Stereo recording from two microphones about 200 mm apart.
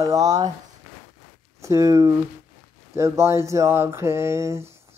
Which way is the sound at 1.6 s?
15° right (ahead or behind).